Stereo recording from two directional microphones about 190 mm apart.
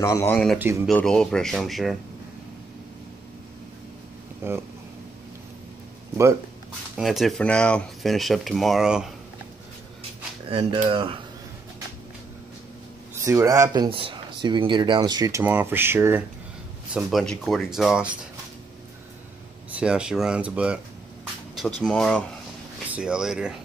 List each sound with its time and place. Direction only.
0.0 s speech: 15° left (ahead or behind)
4.4 s speech: 10° right (ahead or behind)
7.0 s speech: centre (ahead or behind)
10.5 s speech: 30° right (ahead or behind)
13.2 s speech: 15° right (ahead or behind)
16.9 s speech: centre (ahead or behind)
19.8 s speech: 5° right (ahead or behind)
21.8 s speech: 5° left (ahead or behind)